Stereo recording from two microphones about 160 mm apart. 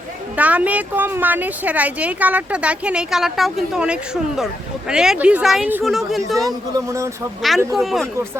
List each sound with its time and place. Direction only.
0.3 s speech: 10° right (ahead or behind)
6.7 s speech: 20° right (ahead or behind)
7.7 s speech: centre (ahead or behind)